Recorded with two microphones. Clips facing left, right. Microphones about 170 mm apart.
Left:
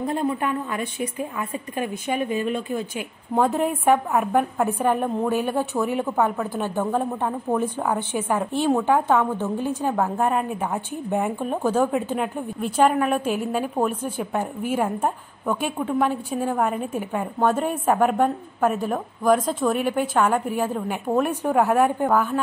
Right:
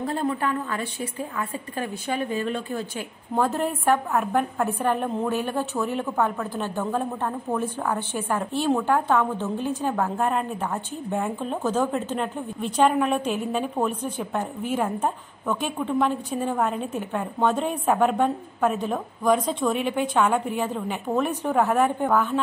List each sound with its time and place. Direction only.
0.0 s a woman's voice: 15° left (ahead or behind)